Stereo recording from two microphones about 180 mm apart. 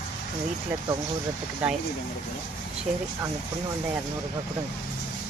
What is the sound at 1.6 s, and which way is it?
Speech, 5° right (ahead or behind).